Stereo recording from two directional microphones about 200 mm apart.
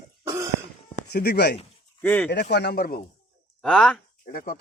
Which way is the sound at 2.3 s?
55° left (ahead or behind).